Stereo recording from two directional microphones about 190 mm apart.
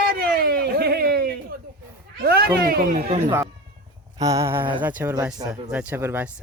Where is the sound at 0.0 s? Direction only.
55° right (ahead or behind).